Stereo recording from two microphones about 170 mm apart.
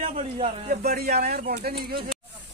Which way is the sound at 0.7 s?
65° right (ahead or behind).